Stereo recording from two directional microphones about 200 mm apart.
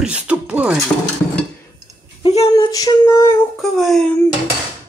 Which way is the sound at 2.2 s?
30° left (ahead or behind).